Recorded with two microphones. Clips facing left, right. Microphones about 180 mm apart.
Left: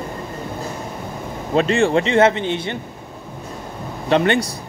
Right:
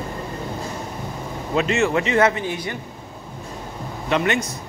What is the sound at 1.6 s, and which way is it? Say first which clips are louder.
Speech: left 4 dB; 30° left (ahead or behind).